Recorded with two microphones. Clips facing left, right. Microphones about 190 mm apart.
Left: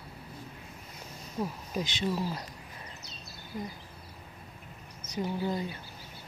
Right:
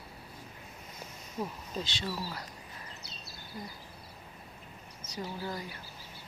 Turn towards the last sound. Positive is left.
turn(degrees=20)  # may be behind; listen again after turning